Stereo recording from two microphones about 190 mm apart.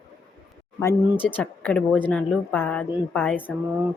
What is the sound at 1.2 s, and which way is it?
Speech, 10° left (ahead or behind).